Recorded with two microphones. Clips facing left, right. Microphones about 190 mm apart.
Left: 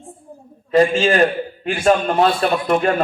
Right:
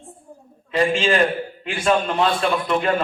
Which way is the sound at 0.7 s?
45° left (ahead or behind).